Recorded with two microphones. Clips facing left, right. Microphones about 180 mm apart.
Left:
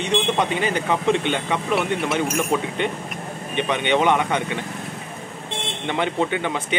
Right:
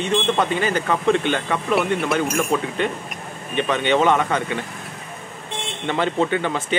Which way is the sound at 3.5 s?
20° left (ahead or behind).